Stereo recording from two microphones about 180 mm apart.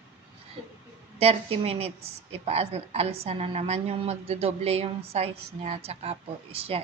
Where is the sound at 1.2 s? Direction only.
35° right (ahead or behind).